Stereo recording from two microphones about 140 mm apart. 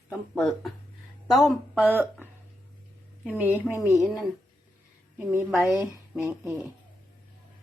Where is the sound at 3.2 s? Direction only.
10° right (ahead or behind).